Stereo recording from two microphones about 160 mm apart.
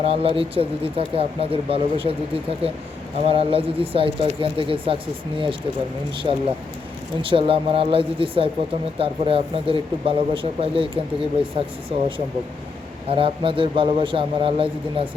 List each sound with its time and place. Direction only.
0.0 s speech: 35° right (ahead or behind)
6.3 s speech: 35° right (ahead or behind)